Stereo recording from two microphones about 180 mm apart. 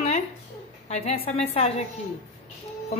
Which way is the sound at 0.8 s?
35° left (ahead or behind).